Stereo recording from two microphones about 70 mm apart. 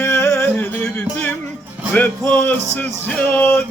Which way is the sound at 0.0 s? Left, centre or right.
Left.